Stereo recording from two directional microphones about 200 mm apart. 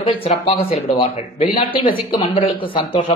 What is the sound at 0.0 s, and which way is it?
Speech, 30° left (ahead or behind).